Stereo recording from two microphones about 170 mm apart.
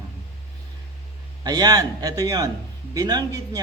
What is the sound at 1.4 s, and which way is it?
Speech, 20° right (ahead or behind).